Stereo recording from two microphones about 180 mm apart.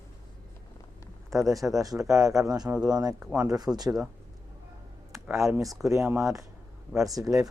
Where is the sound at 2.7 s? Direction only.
5° right (ahead or behind).